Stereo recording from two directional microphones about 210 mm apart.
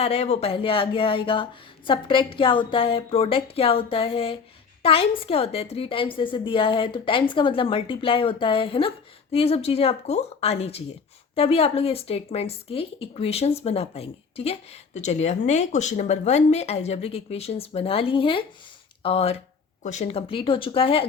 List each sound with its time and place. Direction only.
0.0 s speech: 30° left (ahead or behind)